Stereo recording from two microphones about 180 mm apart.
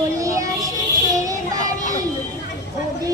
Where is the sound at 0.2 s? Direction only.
20° right (ahead or behind).